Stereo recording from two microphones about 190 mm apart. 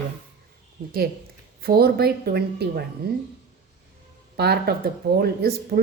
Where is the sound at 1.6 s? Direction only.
55° right (ahead or behind).